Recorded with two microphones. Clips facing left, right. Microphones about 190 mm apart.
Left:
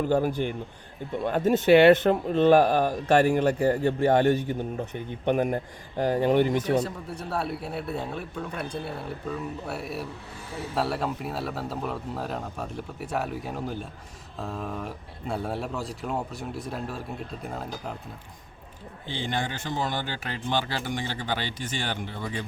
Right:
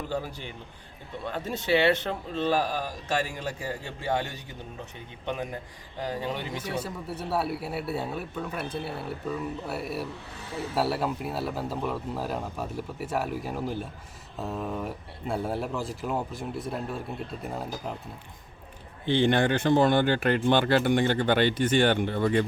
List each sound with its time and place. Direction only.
0.1 s speech: 50° left (ahead or behind)
6.8 s speech: 5° right (ahead or behind)
19.0 s speech: 60° right (ahead or behind)